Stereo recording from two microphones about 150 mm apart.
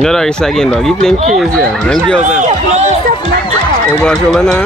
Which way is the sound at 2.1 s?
50° right (ahead or behind).